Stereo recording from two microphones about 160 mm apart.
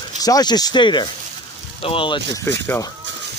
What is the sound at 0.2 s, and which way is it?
Speech, 25° left (ahead or behind).